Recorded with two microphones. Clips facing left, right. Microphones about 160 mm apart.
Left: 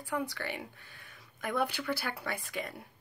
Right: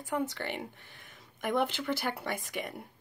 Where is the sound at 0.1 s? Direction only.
20° right (ahead or behind).